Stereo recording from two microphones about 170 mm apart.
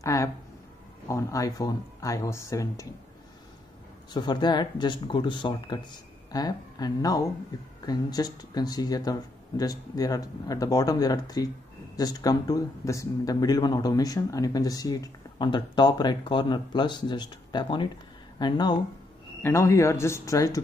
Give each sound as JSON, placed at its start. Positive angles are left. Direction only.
{"t": 0.0, "sound": "a sound", "side_deg": 20}
{"t": 1.0, "sound": "speech", "side_deg": 20}
{"t": 4.1, "sound": "speech", "side_deg": 25}